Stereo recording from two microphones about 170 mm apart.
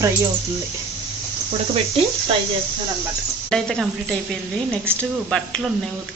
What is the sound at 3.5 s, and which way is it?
Speech, 5° left (ahead or behind).